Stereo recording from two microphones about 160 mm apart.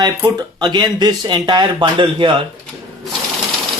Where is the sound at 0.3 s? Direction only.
25° right (ahead or behind).